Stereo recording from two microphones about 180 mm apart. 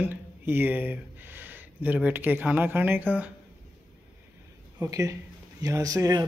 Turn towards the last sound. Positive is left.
turn(degrees=-20)  # may be behind; listen again after turning